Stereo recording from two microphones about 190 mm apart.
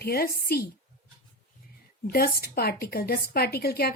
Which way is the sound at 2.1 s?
50° left (ahead or behind).